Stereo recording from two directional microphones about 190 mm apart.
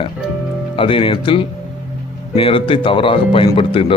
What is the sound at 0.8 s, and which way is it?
Speech, 30° left (ahead or behind).